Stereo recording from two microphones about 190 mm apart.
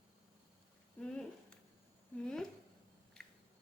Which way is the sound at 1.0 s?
5° left (ahead or behind).